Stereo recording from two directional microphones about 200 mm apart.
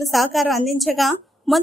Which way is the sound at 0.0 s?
Centre (ahead or behind).